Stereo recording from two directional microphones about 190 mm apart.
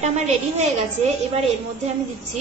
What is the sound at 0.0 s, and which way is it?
Speech, 35° right (ahead or behind).